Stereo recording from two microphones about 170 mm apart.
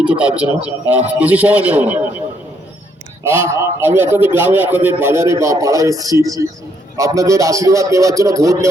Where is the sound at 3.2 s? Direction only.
15° right (ahead or behind).